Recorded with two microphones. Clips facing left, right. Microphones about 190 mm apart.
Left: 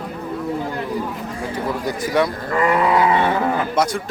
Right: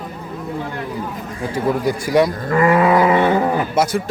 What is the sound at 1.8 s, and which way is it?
Speech, 10° right (ahead or behind).